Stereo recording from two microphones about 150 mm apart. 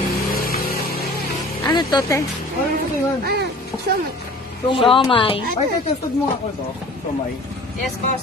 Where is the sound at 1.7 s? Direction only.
30° left (ahead or behind).